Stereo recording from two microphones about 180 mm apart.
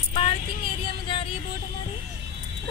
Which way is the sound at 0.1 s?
35° left (ahead or behind).